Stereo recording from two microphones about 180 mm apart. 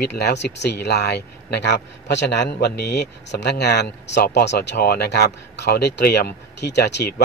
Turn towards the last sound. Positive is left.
turn(degrees=65)  # may be behind; listen again after turning